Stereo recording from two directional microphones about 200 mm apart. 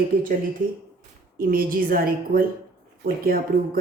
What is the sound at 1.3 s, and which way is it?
A woman's voice, 45° right (ahead or behind).